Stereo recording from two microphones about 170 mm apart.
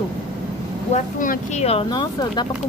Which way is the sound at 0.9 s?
50° left (ahead or behind).